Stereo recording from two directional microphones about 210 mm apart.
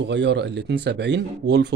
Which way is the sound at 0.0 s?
55° right (ahead or behind).